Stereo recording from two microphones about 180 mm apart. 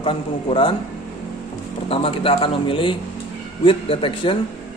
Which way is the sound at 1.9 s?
30° left (ahead or behind).